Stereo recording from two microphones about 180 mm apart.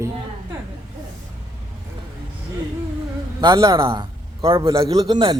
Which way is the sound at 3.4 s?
20° right (ahead or behind).